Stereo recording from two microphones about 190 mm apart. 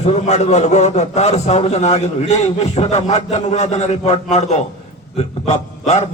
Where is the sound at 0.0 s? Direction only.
35° left (ahead or behind).